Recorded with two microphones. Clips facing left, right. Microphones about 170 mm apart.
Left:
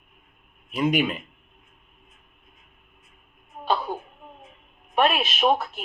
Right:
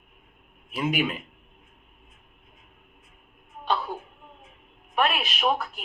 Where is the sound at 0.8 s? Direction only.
5° right (ahead or behind).